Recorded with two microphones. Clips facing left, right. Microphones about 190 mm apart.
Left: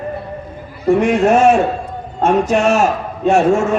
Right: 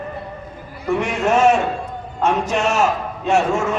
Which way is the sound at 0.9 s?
50° left (ahead or behind).